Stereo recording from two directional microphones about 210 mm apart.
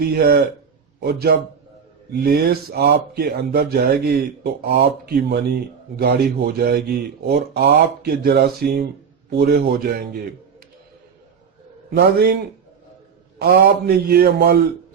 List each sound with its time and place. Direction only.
0.0 s a man's voice: 45° right (ahead or behind)
11.9 s speech: 45° right (ahead or behind)
13.4 s speech: 45° right (ahead or behind)